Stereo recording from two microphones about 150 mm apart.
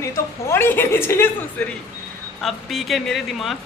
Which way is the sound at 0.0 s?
20° left (ahead or behind).